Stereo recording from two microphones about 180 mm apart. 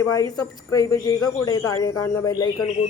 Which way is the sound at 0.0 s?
20° left (ahead or behind).